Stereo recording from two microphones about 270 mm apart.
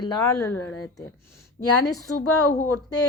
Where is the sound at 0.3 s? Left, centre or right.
Left.